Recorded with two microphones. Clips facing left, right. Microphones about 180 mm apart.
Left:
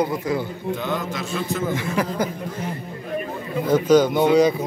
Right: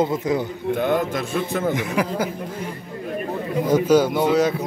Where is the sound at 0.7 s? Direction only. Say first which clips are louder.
Right 6 dB; 55° right (ahead or behind).